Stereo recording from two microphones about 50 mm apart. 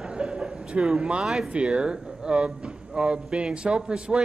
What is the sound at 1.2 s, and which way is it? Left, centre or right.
Speech, centre.